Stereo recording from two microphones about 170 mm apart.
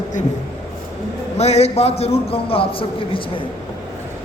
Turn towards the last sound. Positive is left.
turn(degrees=30)  # may be behind; listen again after turning